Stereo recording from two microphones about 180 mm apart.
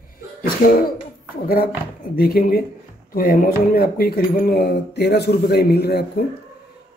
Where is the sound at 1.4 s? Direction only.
55° left (ahead or behind).